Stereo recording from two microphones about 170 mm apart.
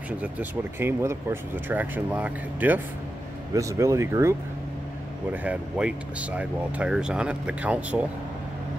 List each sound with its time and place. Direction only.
0.2 s speech: 10° right (ahead or behind)